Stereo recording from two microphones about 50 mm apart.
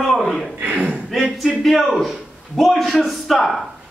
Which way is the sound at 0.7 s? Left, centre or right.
Right.